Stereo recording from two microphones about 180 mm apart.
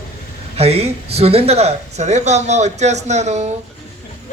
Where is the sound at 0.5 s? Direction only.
35° right (ahead or behind).